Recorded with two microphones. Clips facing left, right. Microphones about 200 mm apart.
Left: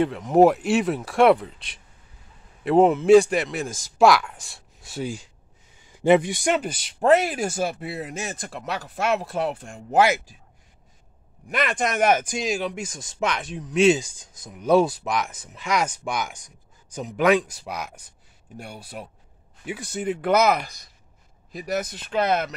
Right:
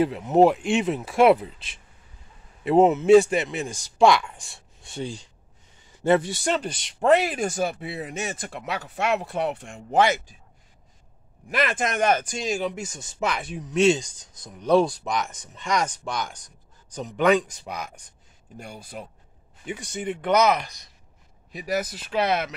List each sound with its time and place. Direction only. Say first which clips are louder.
0.0 s speech: left 1 dB; 5° right (ahead or behind)
11.4 s speech: even; 5° right (ahead or behind)